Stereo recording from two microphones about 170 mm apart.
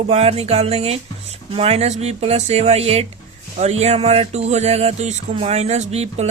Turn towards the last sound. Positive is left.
turn(degrees=-40)  # may be behind; listen again after turning